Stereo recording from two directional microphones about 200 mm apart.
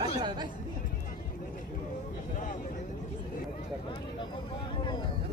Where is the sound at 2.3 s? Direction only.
40° left (ahead or behind).